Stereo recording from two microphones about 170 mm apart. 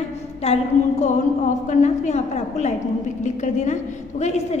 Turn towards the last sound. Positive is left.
turn(degrees=40)  # may be behind; listen again after turning